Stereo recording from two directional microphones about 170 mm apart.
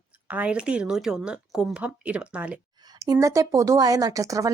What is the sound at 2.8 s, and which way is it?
Speech, 25° right (ahead or behind).